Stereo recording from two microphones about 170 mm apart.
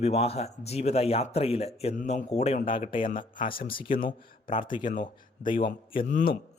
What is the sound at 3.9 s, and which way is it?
Speech, 55° left (ahead or behind).